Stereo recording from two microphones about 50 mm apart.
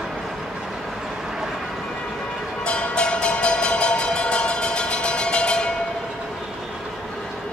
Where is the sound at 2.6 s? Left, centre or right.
Centre.